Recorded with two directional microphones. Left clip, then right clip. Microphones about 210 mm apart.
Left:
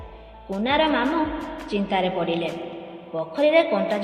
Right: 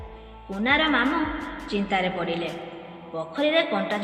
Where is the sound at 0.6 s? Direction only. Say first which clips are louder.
Even; 20° left (ahead or behind).